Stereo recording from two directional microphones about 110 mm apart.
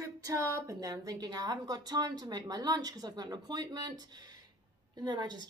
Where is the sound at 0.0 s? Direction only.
30° right (ahead or behind).